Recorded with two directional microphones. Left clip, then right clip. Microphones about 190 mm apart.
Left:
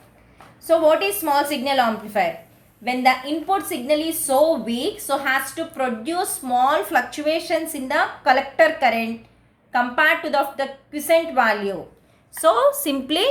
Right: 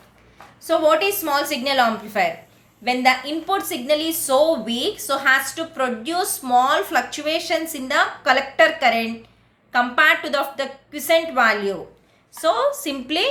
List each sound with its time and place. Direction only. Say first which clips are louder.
0.6 s a woman's voice: left 1 dB; 10° left (ahead or behind)
12.4 s a woman's voice: left 3 dB; 25° left (ahead or behind)